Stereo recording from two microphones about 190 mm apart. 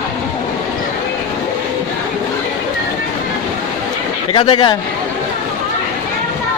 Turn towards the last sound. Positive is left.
turn(degrees=25)  # may be behind; listen again after turning